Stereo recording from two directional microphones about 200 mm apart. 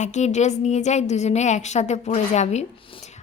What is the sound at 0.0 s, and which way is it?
Speech, 35° left (ahead or behind).